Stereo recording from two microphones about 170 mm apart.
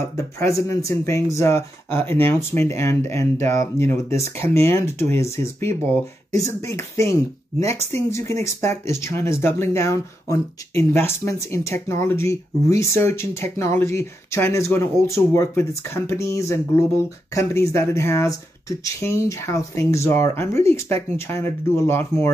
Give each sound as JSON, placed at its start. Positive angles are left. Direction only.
{"t": 0.4, "sound": "speech", "side_deg": 20}